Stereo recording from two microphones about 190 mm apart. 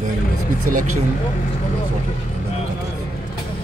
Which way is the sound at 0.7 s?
45° right (ahead or behind).